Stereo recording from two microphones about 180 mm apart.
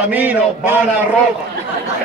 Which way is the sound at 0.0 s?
10° right (ahead or behind).